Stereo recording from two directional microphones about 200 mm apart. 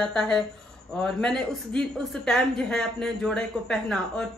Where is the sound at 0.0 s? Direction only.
5° left (ahead or behind).